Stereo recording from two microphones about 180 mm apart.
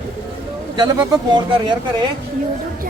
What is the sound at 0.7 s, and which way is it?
Speech, 20° right (ahead or behind).